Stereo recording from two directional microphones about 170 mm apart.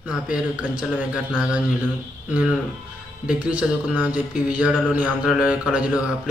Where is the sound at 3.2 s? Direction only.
5° right (ahead or behind).